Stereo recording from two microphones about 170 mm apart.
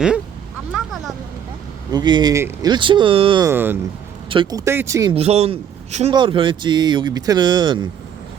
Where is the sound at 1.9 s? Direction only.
25° right (ahead or behind).